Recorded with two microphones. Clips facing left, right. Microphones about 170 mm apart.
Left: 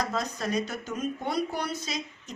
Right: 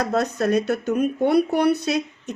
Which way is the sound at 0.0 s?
65° right (ahead or behind).